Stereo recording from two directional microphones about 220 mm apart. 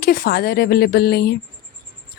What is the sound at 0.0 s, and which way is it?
A woman's voice, 45° left (ahead or behind).